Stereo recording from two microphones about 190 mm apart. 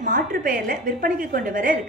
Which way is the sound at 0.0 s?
45° right (ahead or behind).